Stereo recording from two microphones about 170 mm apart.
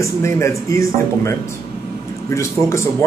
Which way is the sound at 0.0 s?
15° left (ahead or behind).